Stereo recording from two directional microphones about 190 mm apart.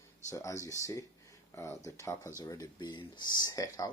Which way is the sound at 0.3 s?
15° left (ahead or behind).